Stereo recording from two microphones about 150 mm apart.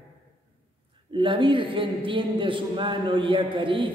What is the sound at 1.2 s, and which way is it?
A man's voice, 35° right (ahead or behind).